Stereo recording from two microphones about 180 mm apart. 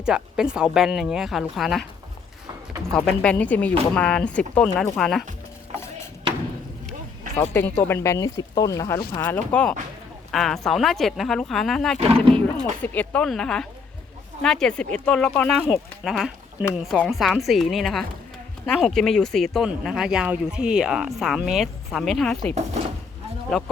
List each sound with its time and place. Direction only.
0.0 s speech: 5° right (ahead or behind)
7.5 s speech: 15° left (ahead or behind)
9.2 s speech: 10° left (ahead or behind)